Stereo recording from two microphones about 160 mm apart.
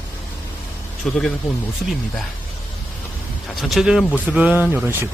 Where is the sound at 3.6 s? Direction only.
Centre (ahead or behind).